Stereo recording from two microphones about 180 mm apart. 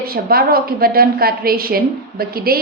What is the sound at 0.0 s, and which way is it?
A woman's voice, 55° right (ahead or behind).